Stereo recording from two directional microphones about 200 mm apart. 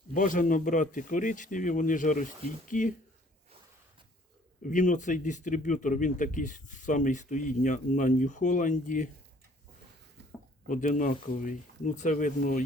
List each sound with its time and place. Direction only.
0.1 s speech: 40° left (ahead or behind)
4.7 s speech: 40° left (ahead or behind)
10.7 s speech: 40° left (ahead or behind)